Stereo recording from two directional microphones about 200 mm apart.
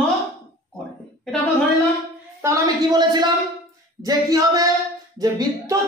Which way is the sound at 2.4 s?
15° right (ahead or behind).